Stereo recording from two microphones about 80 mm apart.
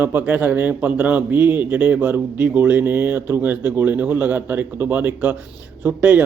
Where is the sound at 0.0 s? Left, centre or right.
Right.